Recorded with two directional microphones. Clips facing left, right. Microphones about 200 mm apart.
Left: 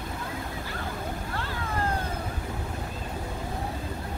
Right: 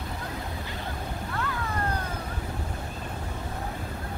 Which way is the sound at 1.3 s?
30° left (ahead or behind).